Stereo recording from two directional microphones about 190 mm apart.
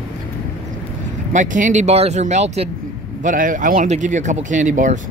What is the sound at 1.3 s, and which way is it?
Speech, 40° right (ahead or behind).